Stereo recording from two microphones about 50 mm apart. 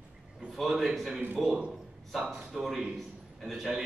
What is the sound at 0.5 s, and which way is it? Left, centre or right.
Speech, centre.